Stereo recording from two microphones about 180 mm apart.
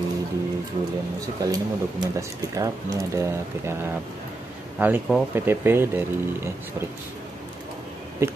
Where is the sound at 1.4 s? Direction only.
20° right (ahead or behind).